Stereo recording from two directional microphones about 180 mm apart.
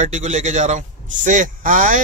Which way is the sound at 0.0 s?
40° right (ahead or behind).